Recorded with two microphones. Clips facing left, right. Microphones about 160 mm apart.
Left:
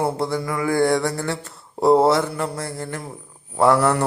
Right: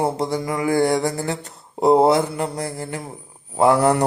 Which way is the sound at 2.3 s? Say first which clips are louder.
Right 1 dB; 15° right (ahead or behind).